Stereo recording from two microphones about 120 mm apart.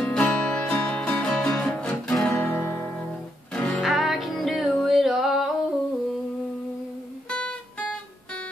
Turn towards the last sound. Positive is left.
turn(degrees=10)  # may be behind; listen again after turning